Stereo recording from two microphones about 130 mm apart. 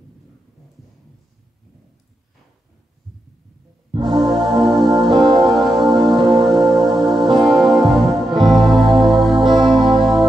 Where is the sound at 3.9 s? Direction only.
35° right (ahead or behind).